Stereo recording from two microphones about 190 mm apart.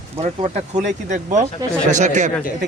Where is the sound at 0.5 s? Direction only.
40° right (ahead or behind).